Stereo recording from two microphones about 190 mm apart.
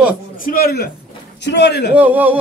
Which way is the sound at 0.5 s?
55° left (ahead or behind).